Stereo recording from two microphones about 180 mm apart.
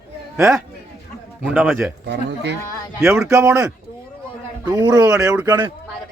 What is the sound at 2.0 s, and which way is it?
Speech, 70° right (ahead or behind).